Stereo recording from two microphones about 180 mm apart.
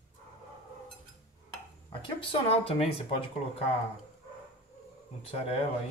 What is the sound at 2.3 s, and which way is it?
Speech, 35° left (ahead or behind).